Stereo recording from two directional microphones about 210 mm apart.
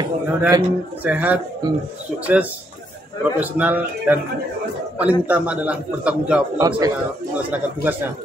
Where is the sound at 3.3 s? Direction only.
5° right (ahead or behind).